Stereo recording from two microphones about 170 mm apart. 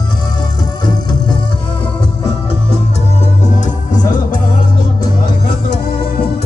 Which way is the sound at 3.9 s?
50° left (ahead or behind).